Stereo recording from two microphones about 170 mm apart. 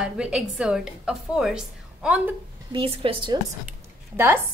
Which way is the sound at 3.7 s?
15° right (ahead or behind).